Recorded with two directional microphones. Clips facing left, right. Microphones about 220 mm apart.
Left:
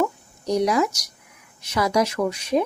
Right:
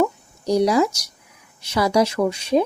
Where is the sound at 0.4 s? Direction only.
30° right (ahead or behind).